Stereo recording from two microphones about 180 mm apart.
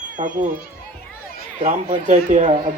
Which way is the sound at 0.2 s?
45° right (ahead or behind).